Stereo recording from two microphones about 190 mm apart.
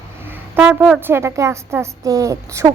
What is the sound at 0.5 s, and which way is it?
A woman's voice, 5° right (ahead or behind).